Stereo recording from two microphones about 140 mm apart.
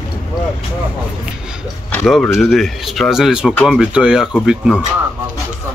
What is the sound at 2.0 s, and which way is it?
Speech, 5° left (ahead or behind).